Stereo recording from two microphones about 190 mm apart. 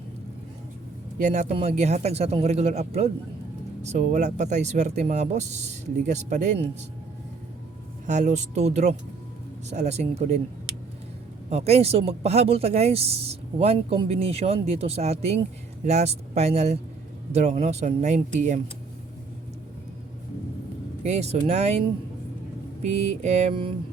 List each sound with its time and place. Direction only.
1.2 s speech: 40° right (ahead or behind)
8.3 s speech: 35° right (ahead or behind)
21.0 s speech: 35° right (ahead or behind)
22.8 s speech: 35° right (ahead or behind)